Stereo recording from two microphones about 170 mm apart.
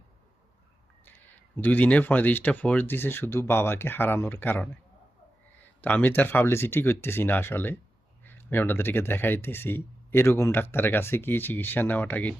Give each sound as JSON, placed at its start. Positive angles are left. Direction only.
{"t": 1.5, "sound": "speech", "side_deg": 10}
{"t": 5.8, "sound": "speech", "side_deg": 10}